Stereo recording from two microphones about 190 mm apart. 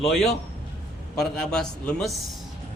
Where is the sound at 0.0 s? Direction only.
Centre (ahead or behind).